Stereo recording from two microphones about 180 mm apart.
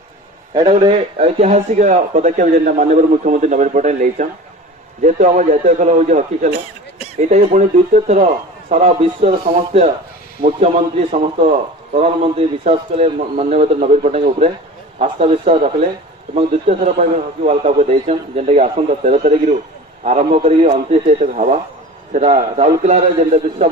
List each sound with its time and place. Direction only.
0.5 s a man's voice: 30° right (ahead or behind)